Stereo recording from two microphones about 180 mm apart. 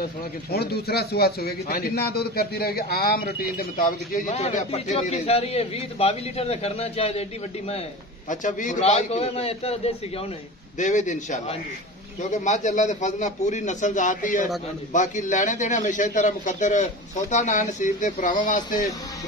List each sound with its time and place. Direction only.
0.5 s a man's voice: 60° left (ahead or behind)
4.4 s a man's voice: 40° left (ahead or behind)